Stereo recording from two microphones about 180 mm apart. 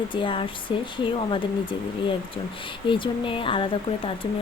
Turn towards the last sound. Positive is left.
turn(degrees=30)  # may be behind; listen again after turning